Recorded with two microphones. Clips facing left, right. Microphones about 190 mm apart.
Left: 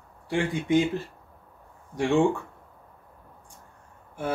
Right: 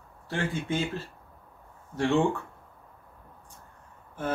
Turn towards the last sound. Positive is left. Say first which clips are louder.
# left 1 dB
turn(degrees=10)  # may be behind; listen again after turning